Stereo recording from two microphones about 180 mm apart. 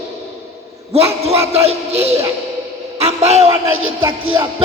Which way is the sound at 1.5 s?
35° right (ahead or behind).